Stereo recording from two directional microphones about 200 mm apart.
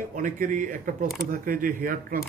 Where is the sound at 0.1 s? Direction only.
40° right (ahead or behind).